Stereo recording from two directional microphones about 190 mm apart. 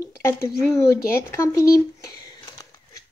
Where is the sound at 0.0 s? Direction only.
15° left (ahead or behind).